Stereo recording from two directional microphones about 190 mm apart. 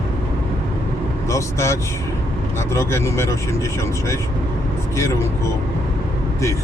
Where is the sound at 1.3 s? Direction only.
15° left (ahead or behind).